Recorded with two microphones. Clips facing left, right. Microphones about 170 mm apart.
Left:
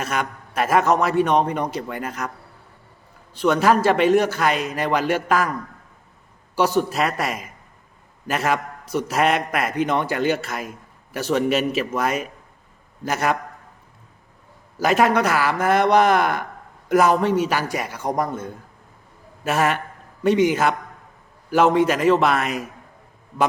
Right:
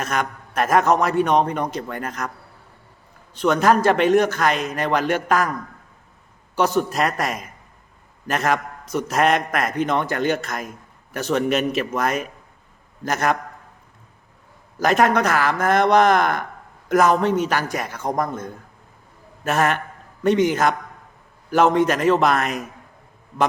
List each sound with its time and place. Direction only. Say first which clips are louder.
0.0 s a man's voice: right 1 dB; 5° left (ahead or behind)
3.4 s a man's voice: even; 5° left (ahead or behind)
6.7 s a man's voice: even; centre (ahead or behind)
14.8 s a man's voice: even; 5° left (ahead or behind)
19.5 s a man's voice: even; 5° left (ahead or behind)